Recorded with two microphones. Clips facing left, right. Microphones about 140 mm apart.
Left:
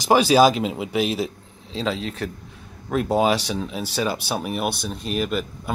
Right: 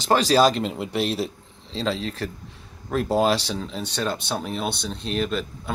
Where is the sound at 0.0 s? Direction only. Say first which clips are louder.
Left 3 dB; 10° left (ahead or behind).